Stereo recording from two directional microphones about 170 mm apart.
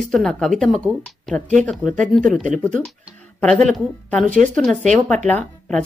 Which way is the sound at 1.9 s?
50° right (ahead or behind).